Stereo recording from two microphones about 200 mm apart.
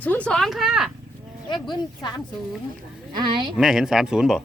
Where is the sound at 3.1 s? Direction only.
25° right (ahead or behind).